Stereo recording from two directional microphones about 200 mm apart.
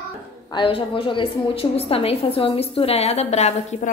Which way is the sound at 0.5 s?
25° left (ahead or behind).